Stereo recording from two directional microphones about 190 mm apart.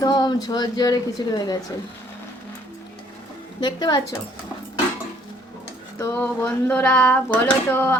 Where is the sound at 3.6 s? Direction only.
20° left (ahead or behind).